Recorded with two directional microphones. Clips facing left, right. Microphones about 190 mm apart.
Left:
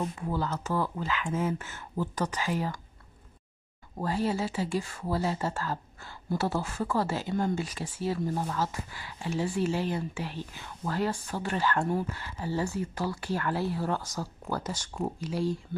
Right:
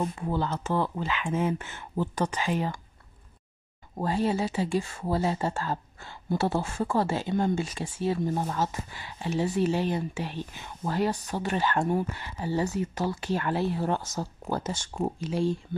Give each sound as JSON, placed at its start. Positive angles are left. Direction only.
{"t": 0.3, "sound": "speech", "side_deg": -25}
{"t": 4.0, "sound": "speech", "side_deg": -20}